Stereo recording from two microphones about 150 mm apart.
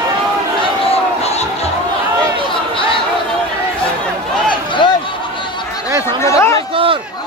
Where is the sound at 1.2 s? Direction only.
45° left (ahead or behind).